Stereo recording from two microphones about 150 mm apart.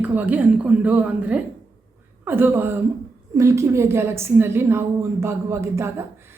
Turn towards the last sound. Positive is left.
turn(degrees=-15)  # may be behind; listen again after turning